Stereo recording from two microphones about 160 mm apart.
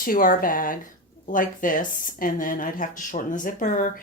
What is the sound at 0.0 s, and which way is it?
Speech, 60° left (ahead or behind).